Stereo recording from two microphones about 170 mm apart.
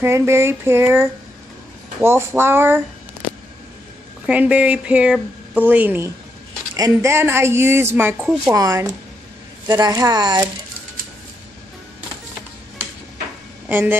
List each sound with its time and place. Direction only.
0.0 s speech: 15° right (ahead or behind)
4.3 s a woman's voice: 10° right (ahead or behind)
8.5 s speech: 20° right (ahead or behind)
13.7 s speech: 10° right (ahead or behind)